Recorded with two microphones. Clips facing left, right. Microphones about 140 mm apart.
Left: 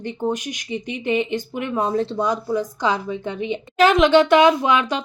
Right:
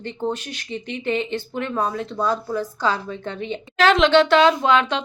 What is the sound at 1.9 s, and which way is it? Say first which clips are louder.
Speech: left 7 dB; 30° left (ahead or behind).